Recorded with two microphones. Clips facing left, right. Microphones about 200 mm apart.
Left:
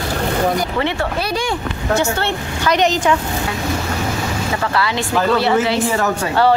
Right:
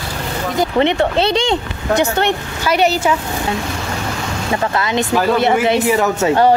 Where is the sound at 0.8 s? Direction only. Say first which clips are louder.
Right 6 dB; 20° right (ahead or behind).